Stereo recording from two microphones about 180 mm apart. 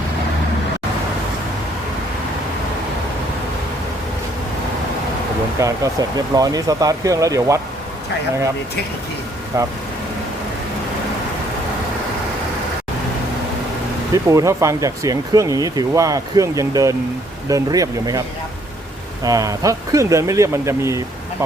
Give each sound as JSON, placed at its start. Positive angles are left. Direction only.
{"t": 5.5, "sound": "speech", "side_deg": -20}
{"t": 9.5, "sound": "speech", "side_deg": -20}
{"t": 14.3, "sound": "speech", "side_deg": -15}
{"t": 19.2, "sound": "speech", "side_deg": -20}